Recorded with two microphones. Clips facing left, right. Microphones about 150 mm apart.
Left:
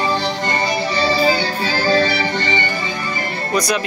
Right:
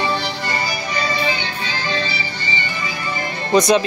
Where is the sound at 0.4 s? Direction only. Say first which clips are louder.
Left 5 dB; 25° left (ahead or behind); by 2.0 s 40° left (ahead or behind).